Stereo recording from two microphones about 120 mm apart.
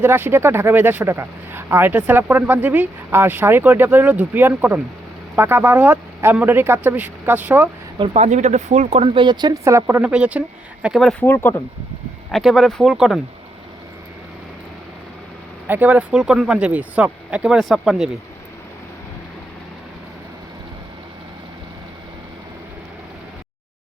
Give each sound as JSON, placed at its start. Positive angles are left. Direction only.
{"t": 0.0, "sound": "speech", "side_deg": -20}
{"t": 8.1, "sound": "speech", "side_deg": -70}
{"t": 9.0, "sound": "speech", "side_deg": -40}
{"t": 10.1, "sound": "speech", "side_deg": -10}
{"t": 11.1, "sound": "speech", "side_deg": 15}
{"t": 12.3, "sound": "speech", "side_deg": 0}
{"t": 15.6, "sound": "speech", "side_deg": -15}